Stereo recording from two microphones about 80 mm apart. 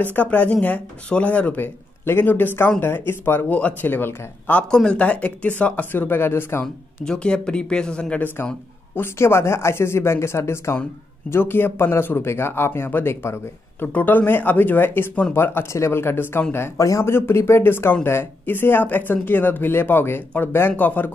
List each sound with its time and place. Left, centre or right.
0.0 s speech: left
4.6 s speech: centre; by 6.6 s left
6.6 s speech: centre
8.9 s speech: left